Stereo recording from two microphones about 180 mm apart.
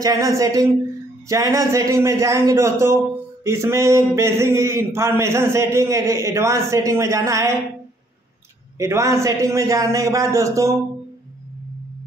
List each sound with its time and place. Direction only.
0.0 s a woman's voice: 20° right (ahead or behind)
8.7 s speech: 15° right (ahead or behind)